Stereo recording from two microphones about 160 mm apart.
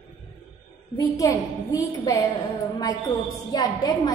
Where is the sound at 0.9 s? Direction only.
20° left (ahead or behind).